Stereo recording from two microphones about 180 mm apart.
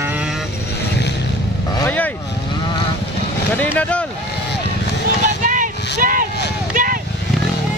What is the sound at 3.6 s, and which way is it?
Vehicle, 5° left (ahead or behind).